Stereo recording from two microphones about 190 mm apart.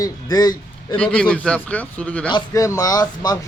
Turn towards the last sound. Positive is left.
turn(degrees=20)  # may be behind; listen again after turning